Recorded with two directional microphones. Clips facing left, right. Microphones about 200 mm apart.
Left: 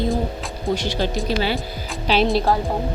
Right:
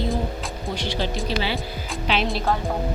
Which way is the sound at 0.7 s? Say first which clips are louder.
Left 4 dB; 45° left (ahead or behind).